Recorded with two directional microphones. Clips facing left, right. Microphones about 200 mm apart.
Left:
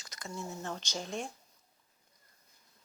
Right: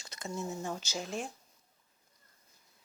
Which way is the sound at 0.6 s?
10° right (ahead or behind).